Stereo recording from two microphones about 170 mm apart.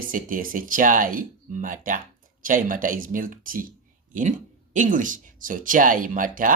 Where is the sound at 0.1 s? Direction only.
55° right (ahead or behind).